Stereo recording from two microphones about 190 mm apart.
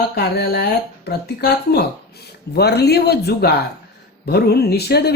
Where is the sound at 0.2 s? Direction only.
55° left (ahead or behind).